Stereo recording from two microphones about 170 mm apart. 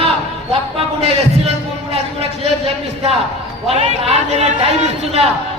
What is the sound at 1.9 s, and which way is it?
Speech, 35° right (ahead or behind).